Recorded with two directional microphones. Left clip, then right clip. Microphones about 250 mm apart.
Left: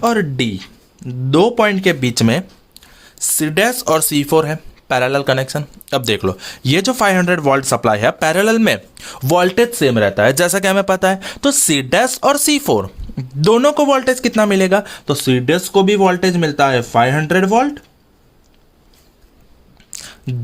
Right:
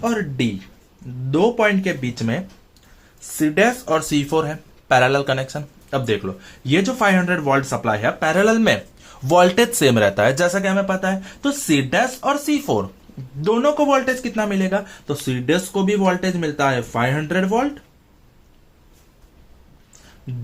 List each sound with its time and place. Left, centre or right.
0.0 s speech: left
4.1 s speech: left
5.9 s speech: left
9.7 s speech: centre
10.3 s speech: left
10.6 s speech: left
13.4 s speech: left